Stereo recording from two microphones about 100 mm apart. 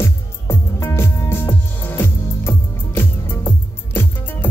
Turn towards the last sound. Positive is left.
turn(degrees=25)  # may be behind; listen again after turning